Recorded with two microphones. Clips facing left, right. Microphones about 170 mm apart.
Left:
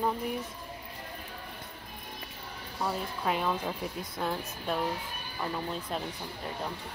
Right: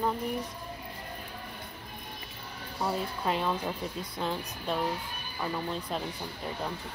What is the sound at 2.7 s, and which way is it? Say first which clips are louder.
Speech: right 2 dB; centre (ahead or behind).